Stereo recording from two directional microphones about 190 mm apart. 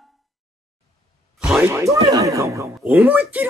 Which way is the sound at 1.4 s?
5° right (ahead or behind).